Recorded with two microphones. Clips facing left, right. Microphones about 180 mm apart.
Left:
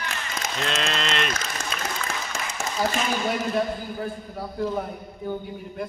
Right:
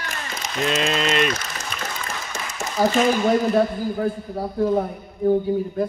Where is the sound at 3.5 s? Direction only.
35° right (ahead or behind).